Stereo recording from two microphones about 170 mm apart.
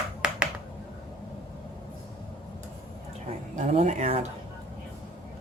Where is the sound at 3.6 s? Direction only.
40° right (ahead or behind).